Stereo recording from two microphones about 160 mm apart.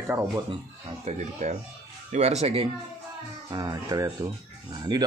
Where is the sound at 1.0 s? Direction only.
45° right (ahead or behind).